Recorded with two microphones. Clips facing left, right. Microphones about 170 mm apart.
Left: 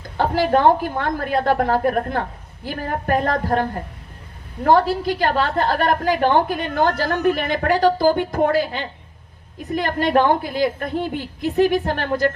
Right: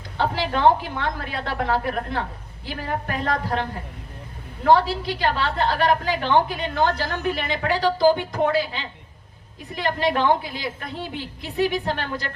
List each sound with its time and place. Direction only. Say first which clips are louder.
0.2 s a woman's voice: left 4 dB; 50° left (ahead or behind)